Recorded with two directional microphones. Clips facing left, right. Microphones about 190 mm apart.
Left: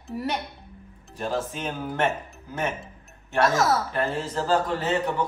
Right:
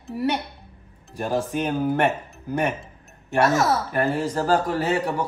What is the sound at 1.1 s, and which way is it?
A man's voice, 10° right (ahead or behind).